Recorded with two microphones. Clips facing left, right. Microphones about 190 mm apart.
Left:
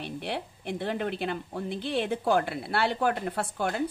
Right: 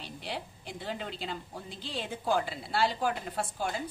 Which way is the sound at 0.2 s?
60° left (ahead or behind).